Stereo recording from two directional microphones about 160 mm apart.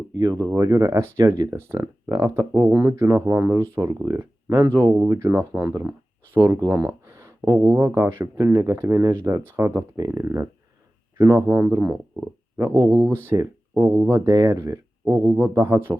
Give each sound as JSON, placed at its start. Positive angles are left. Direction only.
{"t": 0.2, "sound": "speech", "side_deg": -25}